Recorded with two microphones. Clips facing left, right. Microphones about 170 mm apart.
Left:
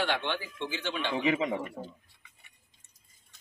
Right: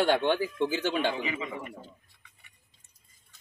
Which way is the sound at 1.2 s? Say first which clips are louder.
Left 7 dB; 75° left (ahead or behind).